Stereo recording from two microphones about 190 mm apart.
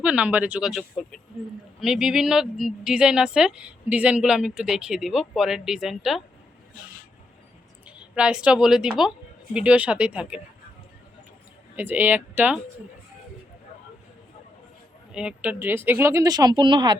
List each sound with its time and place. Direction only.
0.0 s a woman's voice: 5° right (ahead or behind)
7.9 s a woman's voice: 5° right (ahead or behind)
11.8 s speech: 10° right (ahead or behind)
15.1 s speech: 5° right (ahead or behind); by 17.0 s 25° right (ahead or behind)